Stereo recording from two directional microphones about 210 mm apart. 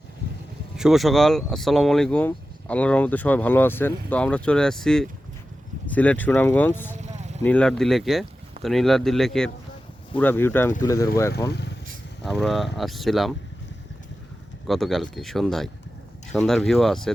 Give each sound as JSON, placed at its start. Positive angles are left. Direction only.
{"t": 0.8, "sound": "speech", "side_deg": 0}
{"t": 7.0, "sound": "vehicle", "side_deg": -35}
{"t": 7.4, "sound": "speech", "side_deg": 5}
{"t": 11.5, "sound": "vehicle", "side_deg": 55}
{"t": 12.2, "sound": "speech", "side_deg": 0}
{"t": 14.7, "sound": "speech", "side_deg": 0}